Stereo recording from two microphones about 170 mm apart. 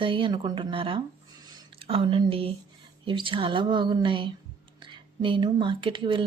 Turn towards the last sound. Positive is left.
turn(degrees=-30)  # may be behind; listen again after turning